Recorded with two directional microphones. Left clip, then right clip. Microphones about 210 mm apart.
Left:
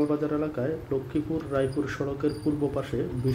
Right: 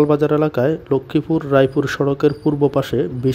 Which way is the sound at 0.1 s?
50° right (ahead or behind).